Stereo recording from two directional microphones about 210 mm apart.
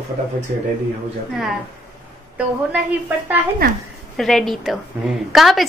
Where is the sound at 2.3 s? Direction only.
5° right (ahead or behind).